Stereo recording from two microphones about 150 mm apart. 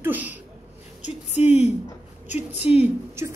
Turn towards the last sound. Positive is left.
turn(degrees=-20)  # may be behind; listen again after turning